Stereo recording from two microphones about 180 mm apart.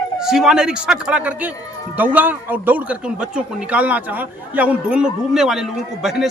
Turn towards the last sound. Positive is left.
turn(degrees=0)  # may be behind; listen again after turning